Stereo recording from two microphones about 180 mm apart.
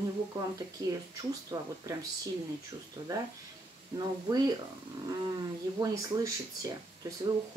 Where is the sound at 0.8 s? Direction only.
20° right (ahead or behind).